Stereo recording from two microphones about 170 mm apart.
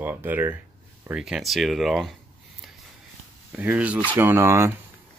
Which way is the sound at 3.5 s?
10° right (ahead or behind).